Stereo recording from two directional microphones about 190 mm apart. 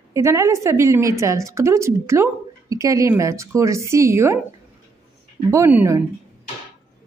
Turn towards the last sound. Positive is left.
turn(degrees=-15)  # may be behind; listen again after turning